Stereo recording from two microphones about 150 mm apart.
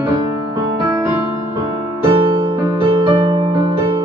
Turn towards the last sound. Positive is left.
turn(degrees=-35)  # may be behind; listen again after turning